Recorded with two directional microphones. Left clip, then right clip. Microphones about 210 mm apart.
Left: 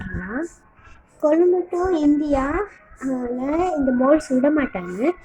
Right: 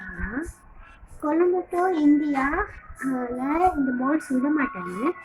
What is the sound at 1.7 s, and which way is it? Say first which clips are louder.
A woman's voice: left 1 dB; 10° left (ahead or behind).